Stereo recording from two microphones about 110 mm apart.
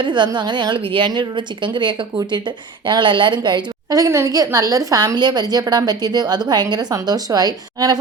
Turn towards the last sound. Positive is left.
turn(degrees=-35)  # may be behind; listen again after turning